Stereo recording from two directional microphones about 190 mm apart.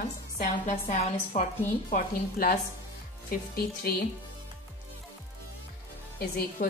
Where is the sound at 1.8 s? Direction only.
50° left (ahead or behind).